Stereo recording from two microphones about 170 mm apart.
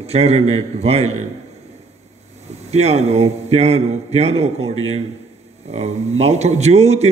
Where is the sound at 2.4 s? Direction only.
40° right (ahead or behind).